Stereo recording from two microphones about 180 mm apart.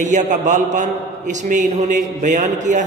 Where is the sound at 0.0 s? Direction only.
45° right (ahead or behind).